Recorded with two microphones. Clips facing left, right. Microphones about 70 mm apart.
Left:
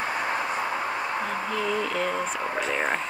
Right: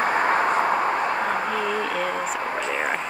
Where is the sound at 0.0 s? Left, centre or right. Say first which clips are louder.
Right 7 dB; right.